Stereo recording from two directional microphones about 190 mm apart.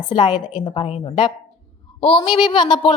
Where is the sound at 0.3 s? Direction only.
25° left (ahead or behind).